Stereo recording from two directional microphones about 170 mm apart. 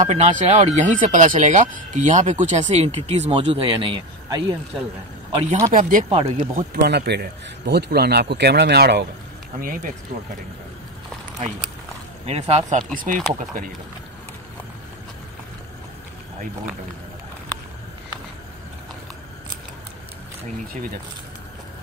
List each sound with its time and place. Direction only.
0.0 s speech: 45° right (ahead or behind); by 4.6 s 25° right (ahead or behind)
5.3 s speech: 40° right (ahead or behind)
5.7 s speech: 50° right (ahead or behind)
6.0 s speech: 35° right (ahead or behind)
6.5 s speech: 70° right (ahead or behind)
12.3 s speech: 40° right (ahead or behind)